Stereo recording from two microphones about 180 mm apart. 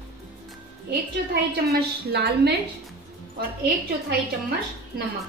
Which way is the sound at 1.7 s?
65° right (ahead or behind).